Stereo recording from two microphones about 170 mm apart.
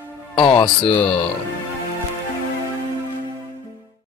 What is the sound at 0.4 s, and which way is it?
Speech, 30° left (ahead or behind).